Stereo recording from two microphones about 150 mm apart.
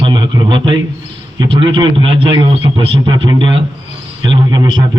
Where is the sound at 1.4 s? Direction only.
35° right (ahead or behind).